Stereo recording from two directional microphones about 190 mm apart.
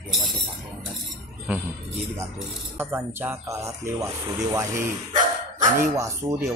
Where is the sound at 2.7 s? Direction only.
10° right (ahead or behind).